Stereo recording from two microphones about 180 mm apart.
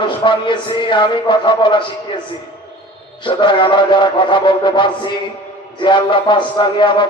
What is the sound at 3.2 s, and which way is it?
Mantra, 25° left (ahead or behind).